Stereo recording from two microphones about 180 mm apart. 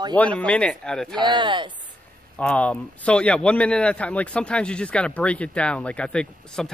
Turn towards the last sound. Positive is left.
turn(degrees=5)  # may be behind; listen again after turning